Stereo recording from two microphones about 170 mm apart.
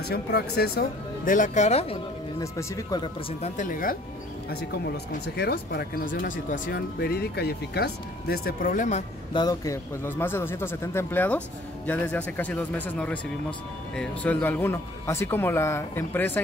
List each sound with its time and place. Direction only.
0.1 s speech: 70° left (ahead or behind); by 2.0 s 40° left (ahead or behind)
2.4 s speech: 20° left (ahead or behind)
3.3 s speech: 45° left (ahead or behind)
4.5 s speech: 70° left (ahead or behind); by 9.0 s 45° left (ahead or behind)
9.3 s speech: 25° left (ahead or behind)